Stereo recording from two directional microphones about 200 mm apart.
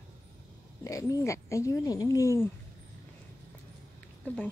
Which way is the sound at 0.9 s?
15° left (ahead or behind).